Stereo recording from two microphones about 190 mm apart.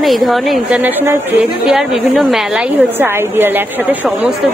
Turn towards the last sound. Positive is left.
turn(degrees=-10)  # may be behind; listen again after turning